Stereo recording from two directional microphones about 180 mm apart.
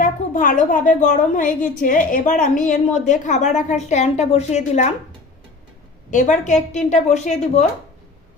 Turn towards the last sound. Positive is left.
turn(degrees=40)  # may be behind; listen again after turning